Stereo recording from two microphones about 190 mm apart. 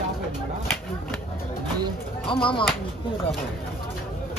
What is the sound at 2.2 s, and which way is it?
Speech, 25° left (ahead or behind).